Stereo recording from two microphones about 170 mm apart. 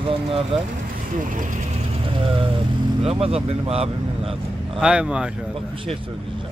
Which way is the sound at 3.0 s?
35° right (ahead or behind).